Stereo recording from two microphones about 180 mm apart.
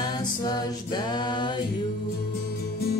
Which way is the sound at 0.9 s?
25° left (ahead or behind).